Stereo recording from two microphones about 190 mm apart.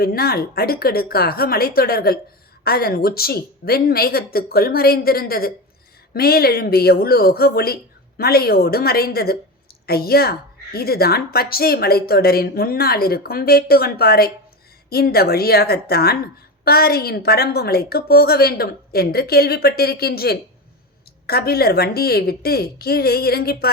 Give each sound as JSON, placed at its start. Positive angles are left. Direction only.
{"t": 0.0, "sound": "a woman's voice", "side_deg": 55}